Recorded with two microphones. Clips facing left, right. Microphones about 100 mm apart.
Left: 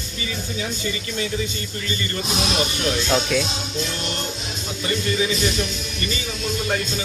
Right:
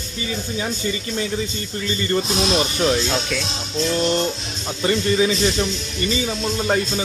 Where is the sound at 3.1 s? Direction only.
5° left (ahead or behind).